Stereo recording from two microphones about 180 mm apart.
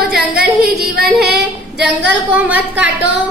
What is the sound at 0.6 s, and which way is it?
Yodeling, 55° right (ahead or behind).